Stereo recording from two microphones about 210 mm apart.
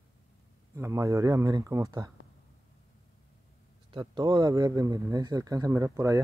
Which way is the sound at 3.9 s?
20° right (ahead or behind).